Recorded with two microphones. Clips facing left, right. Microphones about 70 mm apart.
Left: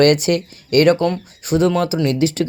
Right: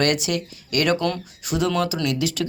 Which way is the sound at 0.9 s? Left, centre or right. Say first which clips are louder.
Left 5 dB; left.